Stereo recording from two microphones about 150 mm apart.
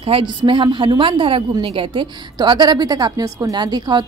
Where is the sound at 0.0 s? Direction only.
35° right (ahead or behind).